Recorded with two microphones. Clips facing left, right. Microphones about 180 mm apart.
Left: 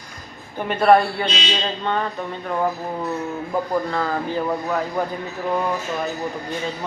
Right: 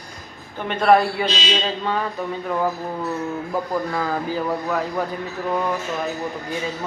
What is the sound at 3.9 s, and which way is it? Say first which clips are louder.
A man's voice: even; 5° right (ahead or behind).